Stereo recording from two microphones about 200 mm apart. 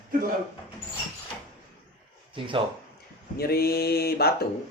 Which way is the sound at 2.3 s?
25° right (ahead or behind).